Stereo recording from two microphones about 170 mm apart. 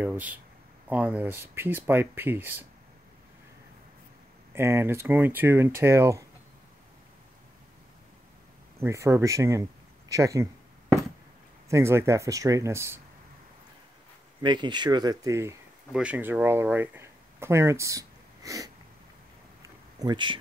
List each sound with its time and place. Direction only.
0.0 s speech: 10° right (ahead or behind)
4.6 s speech: 15° right (ahead or behind)
8.7 s speech: 15° right (ahead or behind)
11.7 s speech: 15° right (ahead or behind)
14.4 s speech: 25° right (ahead or behind)
15.9 s speech: 5° right (ahead or behind)
20.0 s speech: 25° right (ahead or behind)